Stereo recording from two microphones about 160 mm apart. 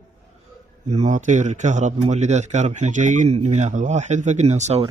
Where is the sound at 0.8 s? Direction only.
45° right (ahead or behind).